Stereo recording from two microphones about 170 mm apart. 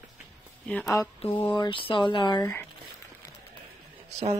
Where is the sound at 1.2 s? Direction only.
30° left (ahead or behind).